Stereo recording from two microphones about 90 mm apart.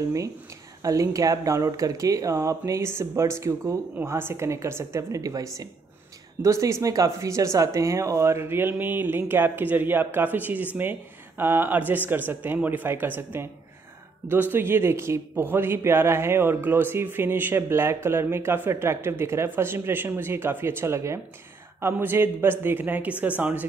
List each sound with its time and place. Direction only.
0.8 s a man's voice: 40° right (ahead or behind); by 23.7 s 15° right (ahead or behind)